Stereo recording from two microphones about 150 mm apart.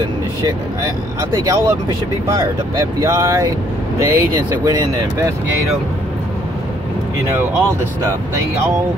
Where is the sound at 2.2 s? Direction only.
20° right (ahead or behind).